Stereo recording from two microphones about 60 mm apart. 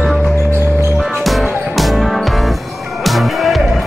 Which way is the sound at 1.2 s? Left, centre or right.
Centre.